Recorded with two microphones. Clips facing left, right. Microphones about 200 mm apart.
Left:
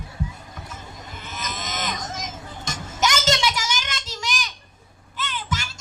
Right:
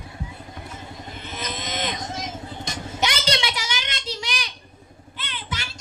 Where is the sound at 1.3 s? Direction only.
45° left (ahead or behind).